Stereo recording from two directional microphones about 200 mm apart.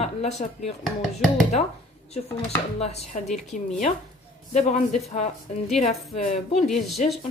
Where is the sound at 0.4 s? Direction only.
30° left (ahead or behind).